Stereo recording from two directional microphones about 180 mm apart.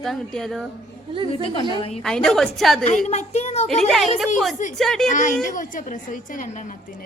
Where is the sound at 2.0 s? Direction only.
5° left (ahead or behind).